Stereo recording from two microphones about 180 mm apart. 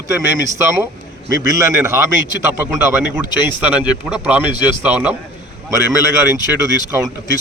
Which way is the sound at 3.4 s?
10° right (ahead or behind).